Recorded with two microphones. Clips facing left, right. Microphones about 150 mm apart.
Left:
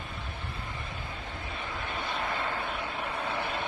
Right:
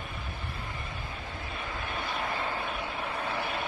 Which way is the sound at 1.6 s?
25° left (ahead or behind).